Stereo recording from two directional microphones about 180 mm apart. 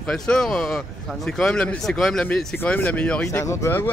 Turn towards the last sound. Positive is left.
turn(degrees=15)  # may be behind; listen again after turning